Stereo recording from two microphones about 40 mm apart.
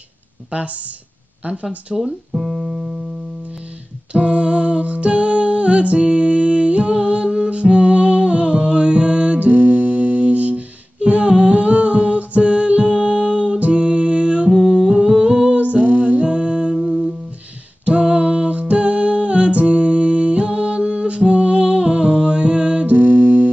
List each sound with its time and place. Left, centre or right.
1.4 s speech: right
2.3 s music: centre
4.1 s music: right
14.5 s music: right
14.9 s humming: right
16.0 s music: right
16.7 s music: centre
17.8 s music: right